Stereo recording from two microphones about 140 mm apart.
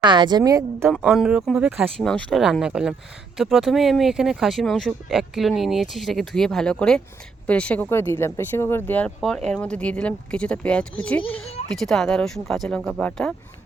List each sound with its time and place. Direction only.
0.0 s a woman's voice: 35° right (ahead or behind)
0.9 s speech: 5° right (ahead or behind)
2.0 s speech: 5° left (ahead or behind)